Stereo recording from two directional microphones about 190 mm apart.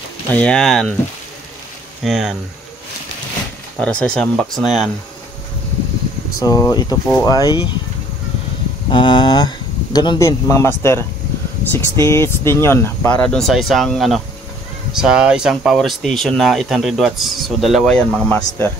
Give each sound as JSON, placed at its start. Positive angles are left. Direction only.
{"t": 0.3, "sound": "speech", "side_deg": 5}
{"t": 2.0, "sound": "speech", "side_deg": 0}
{"t": 3.8, "sound": "speech", "side_deg": 5}
{"t": 6.4, "sound": "speech", "side_deg": 15}
{"t": 8.9, "sound": "speech", "side_deg": 25}